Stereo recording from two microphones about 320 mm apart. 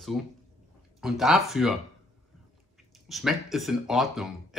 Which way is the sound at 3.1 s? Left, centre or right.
Centre.